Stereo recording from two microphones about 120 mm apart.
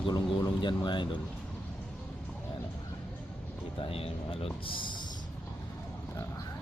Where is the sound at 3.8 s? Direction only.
55° left (ahead or behind).